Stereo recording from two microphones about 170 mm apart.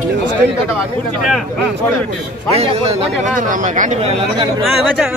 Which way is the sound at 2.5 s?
35° right (ahead or behind).